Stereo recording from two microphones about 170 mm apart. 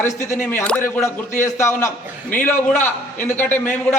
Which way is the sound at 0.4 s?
10° left (ahead or behind).